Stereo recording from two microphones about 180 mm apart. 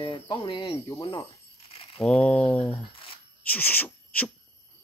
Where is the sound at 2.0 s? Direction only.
Centre (ahead or behind).